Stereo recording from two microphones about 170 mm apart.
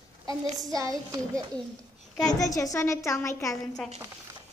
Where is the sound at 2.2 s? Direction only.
20° left (ahead or behind).